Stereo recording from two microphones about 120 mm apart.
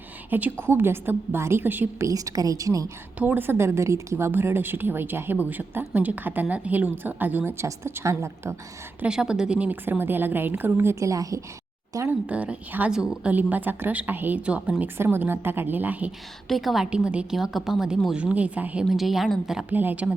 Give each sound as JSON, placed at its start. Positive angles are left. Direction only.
{"t": 0.3, "sound": "a woman's voice", "side_deg": -15}
{"t": 2.0, "sound": "speech", "side_deg": -30}
{"t": 3.2, "sound": "a woman's voice", "side_deg": -15}
{"t": 9.0, "sound": "a woman's voice", "side_deg": -5}
{"t": 12.2, "sound": "a woman's voice", "side_deg": -10}
{"t": 16.5, "sound": "a woman's voice", "side_deg": 0}
{"t": 19.7, "sound": "a woman's voice", "side_deg": -15}